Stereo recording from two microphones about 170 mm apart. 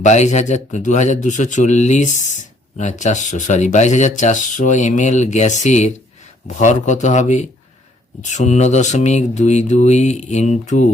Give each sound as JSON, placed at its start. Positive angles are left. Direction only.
{"t": 0.0, "sound": "a man's voice", "side_deg": 45}